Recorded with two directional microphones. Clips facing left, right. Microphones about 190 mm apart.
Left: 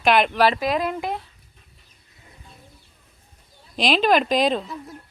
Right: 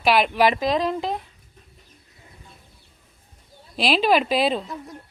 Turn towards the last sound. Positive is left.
turn(degrees=0)  # may be behind; listen again after turning